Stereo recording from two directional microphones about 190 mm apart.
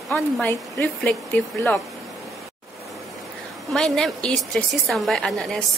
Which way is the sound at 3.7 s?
5° left (ahead or behind).